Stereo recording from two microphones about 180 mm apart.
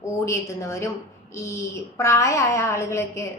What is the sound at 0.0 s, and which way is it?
A woman's voice, 15° left (ahead or behind).